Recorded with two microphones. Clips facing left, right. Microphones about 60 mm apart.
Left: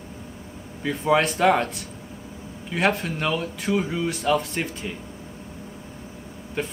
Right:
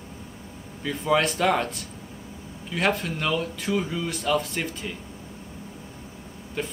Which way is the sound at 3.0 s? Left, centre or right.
Centre.